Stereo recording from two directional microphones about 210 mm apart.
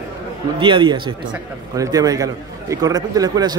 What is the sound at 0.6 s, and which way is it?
A man's voice, 25° right (ahead or behind).